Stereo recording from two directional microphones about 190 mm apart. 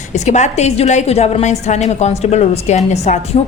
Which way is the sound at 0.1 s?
40° left (ahead or behind).